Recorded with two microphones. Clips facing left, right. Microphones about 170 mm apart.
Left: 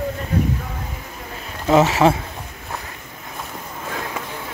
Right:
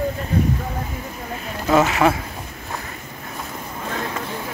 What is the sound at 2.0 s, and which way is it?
Speech, 25° left (ahead or behind).